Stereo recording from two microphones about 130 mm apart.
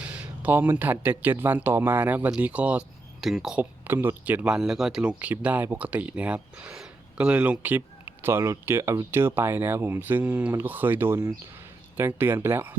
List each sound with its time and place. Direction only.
0.0 s speech: 10° right (ahead or behind)